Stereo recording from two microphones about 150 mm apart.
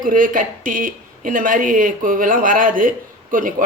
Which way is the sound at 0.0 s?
65° right (ahead or behind).